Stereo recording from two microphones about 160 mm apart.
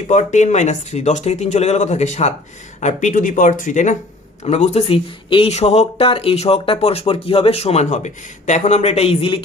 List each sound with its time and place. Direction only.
0.1 s speech: 50° left (ahead or behind)